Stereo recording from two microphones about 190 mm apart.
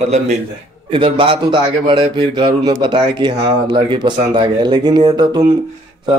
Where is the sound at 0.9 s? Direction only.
25° right (ahead or behind).